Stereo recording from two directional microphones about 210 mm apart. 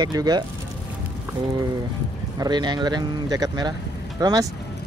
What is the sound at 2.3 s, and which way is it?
Speech, 20° right (ahead or behind).